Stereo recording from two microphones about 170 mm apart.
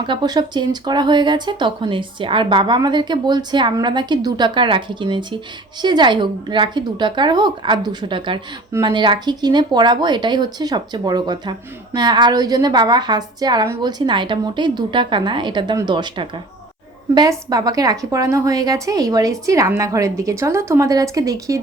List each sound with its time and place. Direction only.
0.0 s speech: 25° right (ahead or behind)